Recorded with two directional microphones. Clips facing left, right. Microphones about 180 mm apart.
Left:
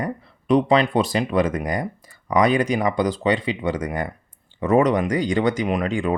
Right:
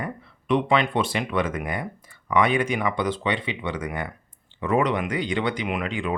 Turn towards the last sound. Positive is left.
turn(degrees=45)  # may be behind; listen again after turning